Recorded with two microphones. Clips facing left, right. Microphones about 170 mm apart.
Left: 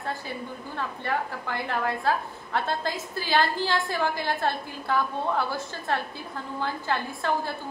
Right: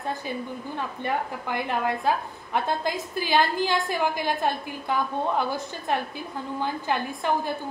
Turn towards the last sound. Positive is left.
turn(degrees=-15)  # may be behind; listen again after turning